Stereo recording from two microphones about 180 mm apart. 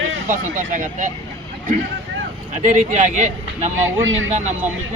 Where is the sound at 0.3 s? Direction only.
45° right (ahead or behind).